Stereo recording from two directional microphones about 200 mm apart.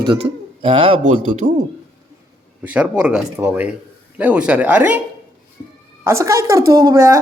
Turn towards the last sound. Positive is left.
turn(degrees=-15)  # may be behind; listen again after turning